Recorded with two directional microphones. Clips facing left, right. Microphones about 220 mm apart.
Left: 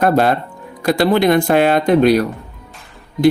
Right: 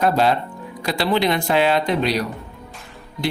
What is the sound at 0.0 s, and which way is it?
Speech, 55° left (ahead or behind).